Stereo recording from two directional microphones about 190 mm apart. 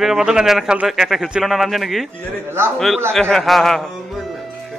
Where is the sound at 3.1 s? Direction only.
Centre (ahead or behind).